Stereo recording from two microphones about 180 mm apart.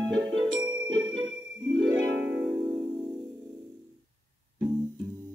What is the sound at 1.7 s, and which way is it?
Music, 90° right.